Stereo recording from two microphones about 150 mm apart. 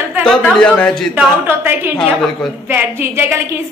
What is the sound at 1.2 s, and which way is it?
A woman's voice, 15° right (ahead or behind).